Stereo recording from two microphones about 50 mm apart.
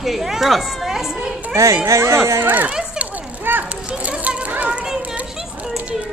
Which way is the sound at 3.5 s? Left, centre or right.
Right.